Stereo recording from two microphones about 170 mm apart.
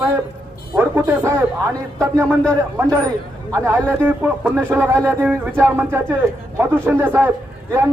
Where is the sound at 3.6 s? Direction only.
15° right (ahead or behind).